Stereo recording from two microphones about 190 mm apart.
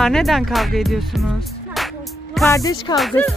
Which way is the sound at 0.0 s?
Centre (ahead or behind).